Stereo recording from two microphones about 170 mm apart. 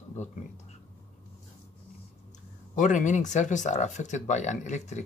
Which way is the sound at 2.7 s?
50° left (ahead or behind).